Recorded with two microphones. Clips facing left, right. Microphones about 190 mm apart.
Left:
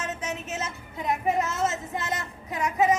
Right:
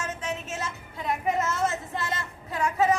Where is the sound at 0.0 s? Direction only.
20° left (ahead or behind).